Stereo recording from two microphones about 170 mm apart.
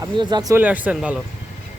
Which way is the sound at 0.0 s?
25° right (ahead or behind).